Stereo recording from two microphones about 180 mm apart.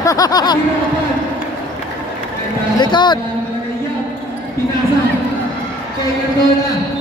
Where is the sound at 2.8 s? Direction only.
25° left (ahead or behind).